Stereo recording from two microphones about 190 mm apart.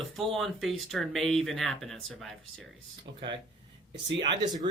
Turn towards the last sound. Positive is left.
turn(degrees=-20)  # may be behind; listen again after turning